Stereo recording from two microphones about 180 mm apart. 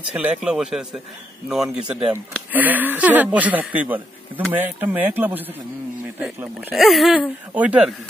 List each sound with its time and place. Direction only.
0.1 s speech: 5° right (ahead or behind)